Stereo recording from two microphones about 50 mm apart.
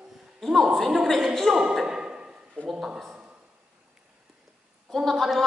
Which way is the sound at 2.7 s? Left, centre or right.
Centre.